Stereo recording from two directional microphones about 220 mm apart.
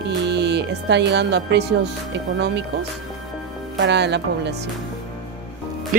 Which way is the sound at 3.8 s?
50° right (ahead or behind).